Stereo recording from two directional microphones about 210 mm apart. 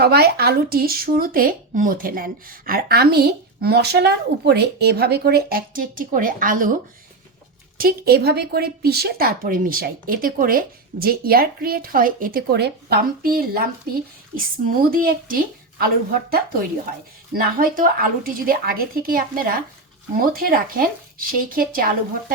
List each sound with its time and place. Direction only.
0.0 s speech: 50° right (ahead or behind)
7.8 s speech: 45° right (ahead or behind)
17.3 s speech: 40° right (ahead or behind)